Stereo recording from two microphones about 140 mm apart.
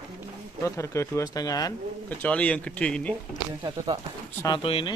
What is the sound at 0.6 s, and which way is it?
Speech, 20° left (ahead or behind).